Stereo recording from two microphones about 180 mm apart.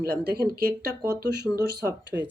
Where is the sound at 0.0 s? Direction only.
60° right (ahead or behind).